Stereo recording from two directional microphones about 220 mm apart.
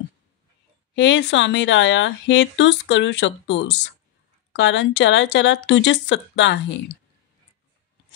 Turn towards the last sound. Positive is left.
turn(degrees=55)  # may be behind; listen again after turning